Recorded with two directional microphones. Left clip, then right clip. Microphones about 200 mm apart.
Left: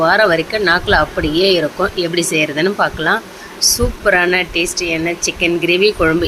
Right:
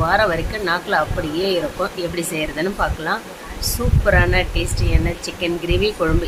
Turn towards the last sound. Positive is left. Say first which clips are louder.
# left 7 dB
turn(degrees=15)  # may be behind; listen again after turning